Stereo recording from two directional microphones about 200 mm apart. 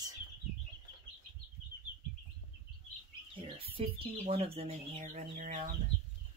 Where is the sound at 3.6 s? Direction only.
30° right (ahead or behind).